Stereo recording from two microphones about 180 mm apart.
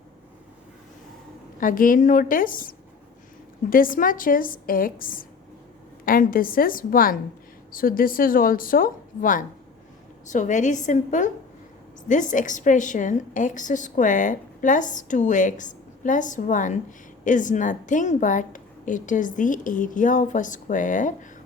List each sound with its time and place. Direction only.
1.5 s a woman's voice: 50° left (ahead or behind)